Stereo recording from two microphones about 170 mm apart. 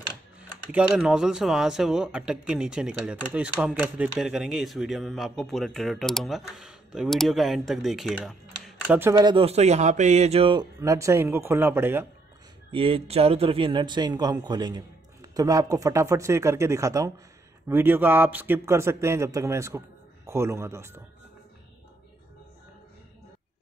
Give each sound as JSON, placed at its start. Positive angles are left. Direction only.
{"t": 0.4, "sound": "speech", "side_deg": -10}
{"t": 9.0, "sound": "speech", "side_deg": -25}
{"t": 12.7, "sound": "a man's voice", "side_deg": -35}